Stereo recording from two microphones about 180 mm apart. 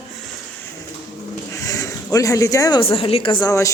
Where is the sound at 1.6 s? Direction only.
20° left (ahead or behind).